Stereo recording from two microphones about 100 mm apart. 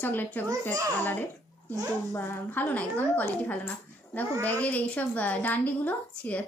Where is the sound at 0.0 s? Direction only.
20° left (ahead or behind).